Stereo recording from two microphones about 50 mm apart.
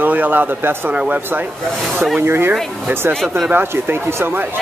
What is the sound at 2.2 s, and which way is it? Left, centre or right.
Speech, right.